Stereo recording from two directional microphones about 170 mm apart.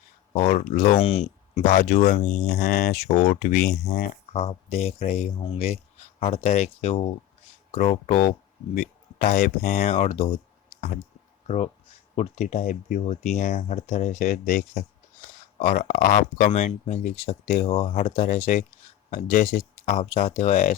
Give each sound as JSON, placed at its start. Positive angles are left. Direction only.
{"t": 0.3, "sound": "speech", "side_deg": 45}
{"t": 1.9, "sound": "speech", "side_deg": 45}
{"t": 2.6, "sound": "speech", "side_deg": 65}
{"t": 2.9, "sound": "speech", "side_deg": 40}
{"t": 3.4, "sound": "speech", "side_deg": 65}
{"t": 4.3, "sound": "speech", "side_deg": 35}
{"t": 8.7, "sound": "a sound", "side_deg": 60}
{"t": 9.6, "sound": "speech", "side_deg": 40}